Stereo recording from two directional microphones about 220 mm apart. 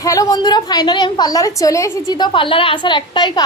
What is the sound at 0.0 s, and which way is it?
A woman's voice, 15° left (ahead or behind).